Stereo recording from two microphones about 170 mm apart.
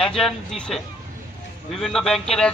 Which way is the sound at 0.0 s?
5° left (ahead or behind).